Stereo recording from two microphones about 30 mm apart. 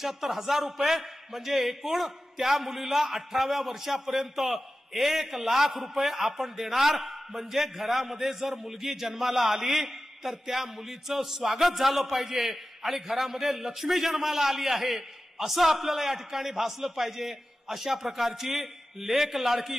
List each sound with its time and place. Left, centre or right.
0.0 s a man's voice: centre